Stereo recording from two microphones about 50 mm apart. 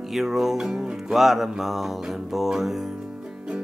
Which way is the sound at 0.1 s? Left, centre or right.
Centre.